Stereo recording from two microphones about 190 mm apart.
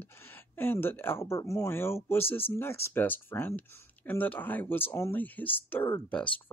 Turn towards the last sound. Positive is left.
turn(degrees=10)  # may be behind; listen again after turning